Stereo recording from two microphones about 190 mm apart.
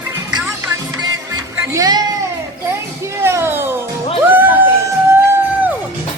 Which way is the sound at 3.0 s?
15° right (ahead or behind).